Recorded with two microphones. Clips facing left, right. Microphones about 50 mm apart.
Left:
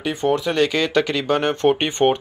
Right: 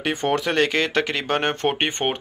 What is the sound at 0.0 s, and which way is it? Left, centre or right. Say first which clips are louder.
Speech: left 2 dB; right.